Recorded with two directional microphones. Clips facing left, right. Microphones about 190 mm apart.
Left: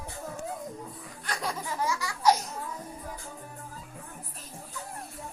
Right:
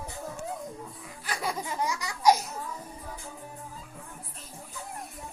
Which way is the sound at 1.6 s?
20° right (ahead or behind).